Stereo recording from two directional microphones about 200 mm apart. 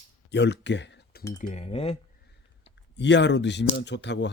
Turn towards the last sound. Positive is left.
turn(degrees=60)  # may be behind; listen again after turning